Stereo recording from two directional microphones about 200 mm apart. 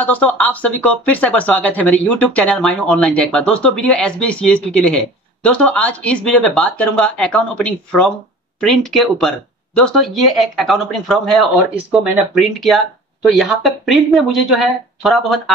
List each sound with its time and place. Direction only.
0.0 s speech: 10° left (ahead or behind)